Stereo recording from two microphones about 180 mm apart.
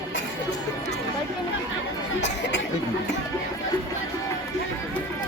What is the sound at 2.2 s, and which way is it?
Chatter, 80° left.